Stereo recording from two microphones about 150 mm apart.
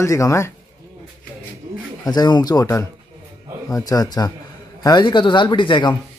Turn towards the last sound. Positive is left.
turn(degrees=30)  # may be behind; listen again after turning